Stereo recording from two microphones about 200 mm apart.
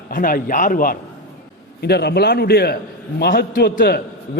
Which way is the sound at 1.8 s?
55° left (ahead or behind).